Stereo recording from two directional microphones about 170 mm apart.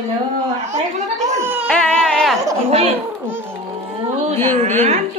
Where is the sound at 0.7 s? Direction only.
40° right (ahead or behind).